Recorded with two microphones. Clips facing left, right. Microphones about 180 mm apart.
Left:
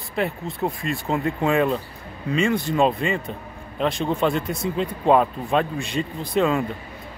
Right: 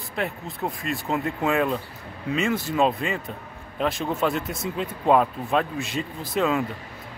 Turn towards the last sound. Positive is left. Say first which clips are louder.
# left 3 dB
turn(degrees=0)  # may be behind; listen again after turning